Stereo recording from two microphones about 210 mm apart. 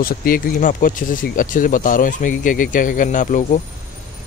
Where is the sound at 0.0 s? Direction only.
45° left (ahead or behind).